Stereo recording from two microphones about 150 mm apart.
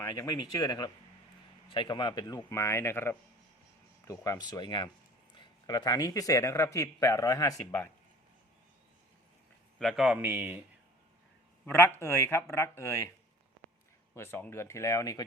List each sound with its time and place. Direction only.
0.0 s speech: 25° left (ahead or behind)
9.7 s a man's voice: centre (ahead or behind)
11.6 s speech: 15° left (ahead or behind)
14.2 s speech: 15° left (ahead or behind)